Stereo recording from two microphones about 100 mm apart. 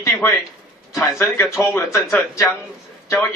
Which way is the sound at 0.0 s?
30° left (ahead or behind).